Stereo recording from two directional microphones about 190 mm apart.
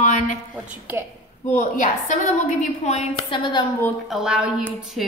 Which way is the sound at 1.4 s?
40° left (ahead or behind).